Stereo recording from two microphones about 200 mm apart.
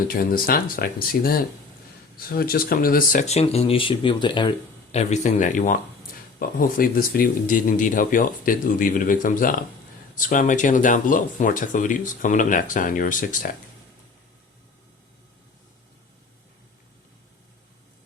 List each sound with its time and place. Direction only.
0.1 s speech: 45° left (ahead or behind)